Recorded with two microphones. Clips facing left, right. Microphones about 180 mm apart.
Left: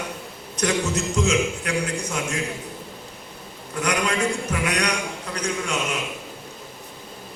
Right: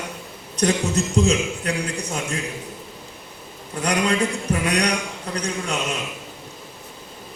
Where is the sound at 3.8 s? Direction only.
35° right (ahead or behind).